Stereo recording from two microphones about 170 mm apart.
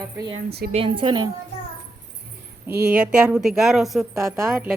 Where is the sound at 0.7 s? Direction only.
30° right (ahead or behind).